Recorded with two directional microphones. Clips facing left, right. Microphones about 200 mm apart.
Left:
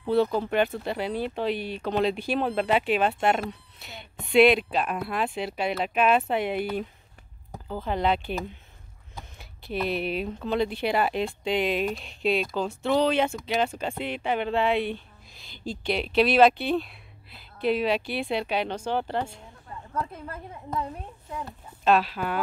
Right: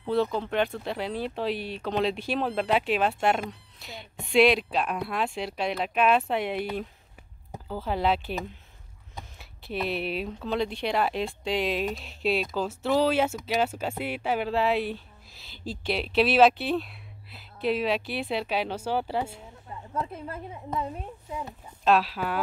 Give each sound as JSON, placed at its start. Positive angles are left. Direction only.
{"t": 0.0, "sound": "speech", "side_deg": 5}
{"t": 19.7, "sound": "a woman's voice", "side_deg": -20}
{"t": 21.3, "sound": "speech", "side_deg": -10}